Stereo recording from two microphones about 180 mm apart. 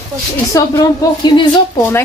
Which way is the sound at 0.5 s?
20° left (ahead or behind).